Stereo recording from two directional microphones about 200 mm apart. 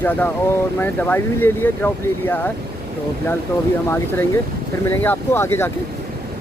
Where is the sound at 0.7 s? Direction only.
10° left (ahead or behind).